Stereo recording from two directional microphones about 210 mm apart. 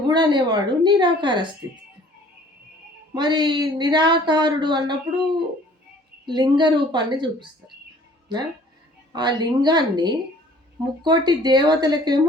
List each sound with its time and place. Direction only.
0.1 s speech: 20° right (ahead or behind)
3.2 s speech: 20° right (ahead or behind)
9.1 s speech: 20° right (ahead or behind)